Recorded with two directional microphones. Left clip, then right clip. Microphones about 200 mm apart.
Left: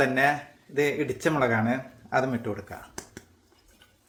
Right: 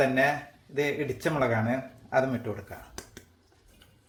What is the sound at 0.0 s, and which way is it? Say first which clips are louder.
Speech: left 1 dB; 15° left (ahead or behind).